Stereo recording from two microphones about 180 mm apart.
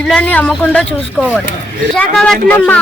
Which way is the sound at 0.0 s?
5° left (ahead or behind).